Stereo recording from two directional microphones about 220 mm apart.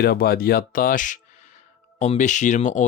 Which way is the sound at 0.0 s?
45° left (ahead or behind).